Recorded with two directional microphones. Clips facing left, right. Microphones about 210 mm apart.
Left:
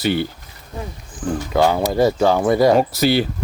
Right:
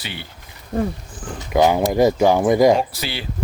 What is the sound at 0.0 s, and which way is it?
Speech, 45° left (ahead or behind).